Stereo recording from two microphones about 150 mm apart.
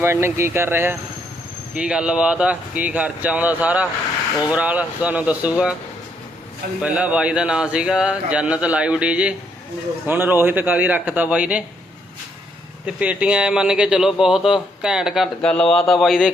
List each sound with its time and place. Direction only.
0.0 s speech: 15° right (ahead or behind)
6.8 s speech: 10° right (ahead or behind)
12.8 s a man's voice: 10° right (ahead or behind)